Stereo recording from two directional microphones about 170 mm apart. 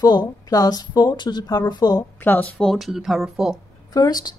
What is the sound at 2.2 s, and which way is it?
Speech, 10° left (ahead or behind).